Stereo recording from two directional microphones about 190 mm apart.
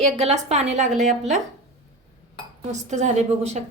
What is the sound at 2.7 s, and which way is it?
Speech, 35° right (ahead or behind).